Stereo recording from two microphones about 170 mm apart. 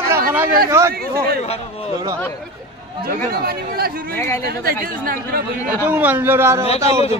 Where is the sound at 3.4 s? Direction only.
65° right (ahead or behind).